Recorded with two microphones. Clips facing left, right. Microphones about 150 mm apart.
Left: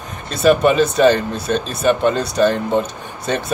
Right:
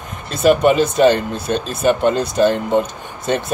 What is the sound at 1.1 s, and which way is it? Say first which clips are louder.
Speech: even; 15° right (ahead or behind).